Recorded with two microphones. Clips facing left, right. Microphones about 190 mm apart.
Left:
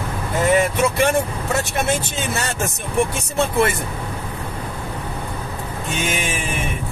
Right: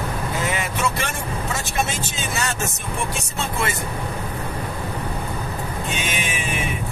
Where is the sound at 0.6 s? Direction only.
60° left (ahead or behind).